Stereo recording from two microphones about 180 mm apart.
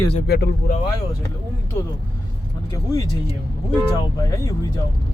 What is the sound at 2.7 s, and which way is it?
Speech, 20° left (ahead or behind).